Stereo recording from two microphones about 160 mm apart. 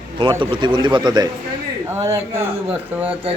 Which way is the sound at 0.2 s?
30° right (ahead or behind).